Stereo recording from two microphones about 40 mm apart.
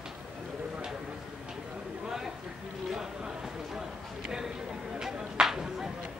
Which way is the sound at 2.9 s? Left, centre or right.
Centre.